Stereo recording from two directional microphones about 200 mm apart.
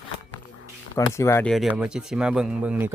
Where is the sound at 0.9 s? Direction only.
15° left (ahead or behind).